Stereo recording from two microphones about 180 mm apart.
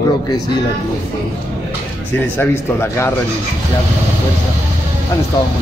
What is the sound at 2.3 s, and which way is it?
Speech, 15° left (ahead or behind).